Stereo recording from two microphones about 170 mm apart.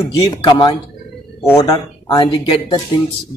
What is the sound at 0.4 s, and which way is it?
A man's voice, 30° left (ahead or behind).